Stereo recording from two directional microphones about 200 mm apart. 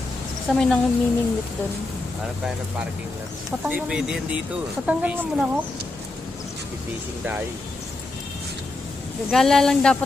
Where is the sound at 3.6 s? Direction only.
5° right (ahead or behind).